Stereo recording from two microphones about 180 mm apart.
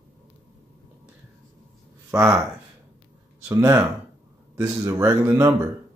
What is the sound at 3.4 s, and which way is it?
Speech, 15° right (ahead or behind).